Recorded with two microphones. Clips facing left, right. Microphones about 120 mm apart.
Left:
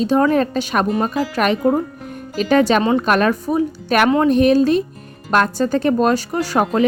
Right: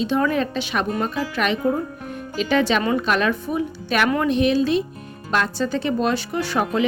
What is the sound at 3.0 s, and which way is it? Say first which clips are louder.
Speech: left 5 dB; 45° left (ahead or behind).